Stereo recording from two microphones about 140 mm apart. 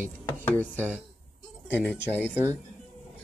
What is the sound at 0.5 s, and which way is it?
Speech, 10° left (ahead or behind).